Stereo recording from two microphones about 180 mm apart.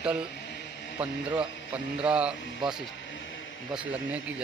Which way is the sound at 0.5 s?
75° left (ahead or behind).